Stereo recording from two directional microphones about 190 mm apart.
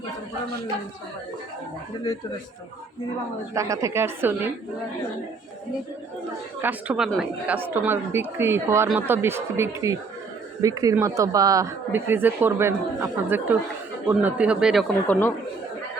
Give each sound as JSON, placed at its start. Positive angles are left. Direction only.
{"t": 3.5, "sound": "speech", "side_deg": -15}
{"t": 6.6, "sound": "speech", "side_deg": -10}